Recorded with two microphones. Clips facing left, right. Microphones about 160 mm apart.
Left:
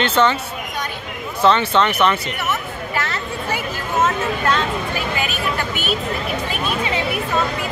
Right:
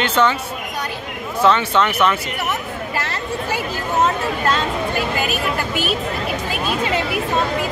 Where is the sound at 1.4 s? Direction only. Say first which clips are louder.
Left 1 dB; 10° right (ahead or behind).